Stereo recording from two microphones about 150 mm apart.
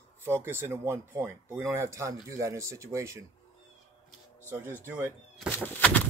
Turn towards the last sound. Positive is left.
turn(degrees=10)  # may be behind; listen again after turning